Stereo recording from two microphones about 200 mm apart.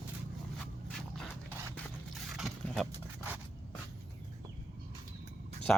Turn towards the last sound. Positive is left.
turn(degrees=5)  # may be behind; listen again after turning